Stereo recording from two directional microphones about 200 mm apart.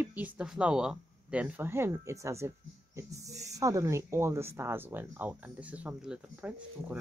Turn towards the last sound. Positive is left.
turn(degrees=-5)  # may be behind; listen again after turning